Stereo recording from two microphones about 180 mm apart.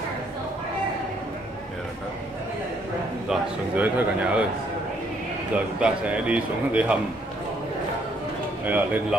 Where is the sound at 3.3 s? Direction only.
5° right (ahead or behind).